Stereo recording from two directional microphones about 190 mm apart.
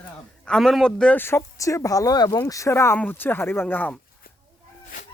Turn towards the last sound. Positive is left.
turn(degrees=10)  # may be behind; listen again after turning